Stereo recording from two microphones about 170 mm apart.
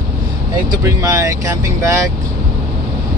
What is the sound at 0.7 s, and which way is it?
Speech, 20° right (ahead or behind).